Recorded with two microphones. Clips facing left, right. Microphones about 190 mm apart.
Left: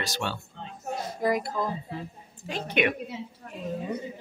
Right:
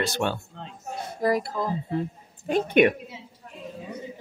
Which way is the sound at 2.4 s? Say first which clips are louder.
Right 7 dB; 55° right (ahead or behind).